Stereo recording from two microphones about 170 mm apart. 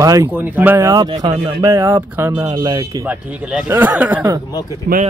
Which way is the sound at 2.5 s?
25° right (ahead or behind).